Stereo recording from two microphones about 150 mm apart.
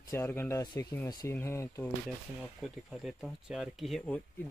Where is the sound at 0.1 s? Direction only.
15° left (ahead or behind).